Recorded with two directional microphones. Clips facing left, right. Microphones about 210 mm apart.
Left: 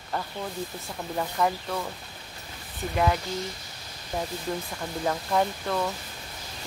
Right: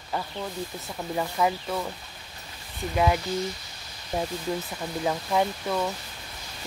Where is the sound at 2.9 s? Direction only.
10° right (ahead or behind).